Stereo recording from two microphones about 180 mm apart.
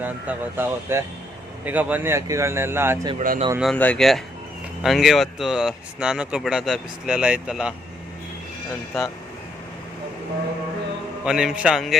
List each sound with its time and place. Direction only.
0.0 s speech: 10° right (ahead or behind)
3.2 s speech: 40° right (ahead or behind)
3.6 s speech: 5° left (ahead or behind)
11.3 s speech: 5° right (ahead or behind)